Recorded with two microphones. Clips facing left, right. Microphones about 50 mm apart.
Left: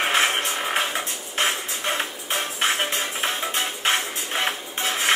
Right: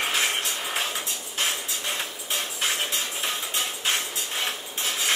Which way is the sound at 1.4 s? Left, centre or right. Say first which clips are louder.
Left 5 dB; left.